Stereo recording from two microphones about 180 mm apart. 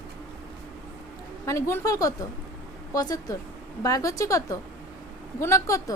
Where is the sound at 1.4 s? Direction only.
15° left (ahead or behind).